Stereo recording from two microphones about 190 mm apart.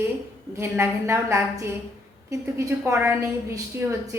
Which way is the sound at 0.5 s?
15° right (ahead or behind).